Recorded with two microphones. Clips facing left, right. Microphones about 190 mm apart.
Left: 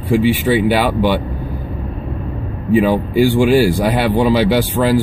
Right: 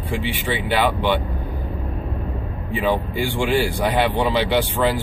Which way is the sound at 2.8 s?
10° left (ahead or behind).